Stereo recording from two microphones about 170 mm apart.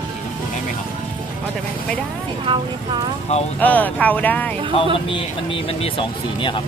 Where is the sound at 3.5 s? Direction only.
10° left (ahead or behind).